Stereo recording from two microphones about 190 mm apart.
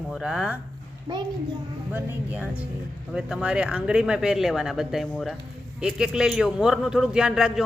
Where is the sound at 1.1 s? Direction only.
20° right (ahead or behind).